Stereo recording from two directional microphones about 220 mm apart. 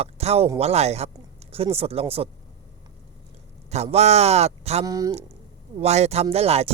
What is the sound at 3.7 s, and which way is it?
Speech, 30° right (ahead or behind).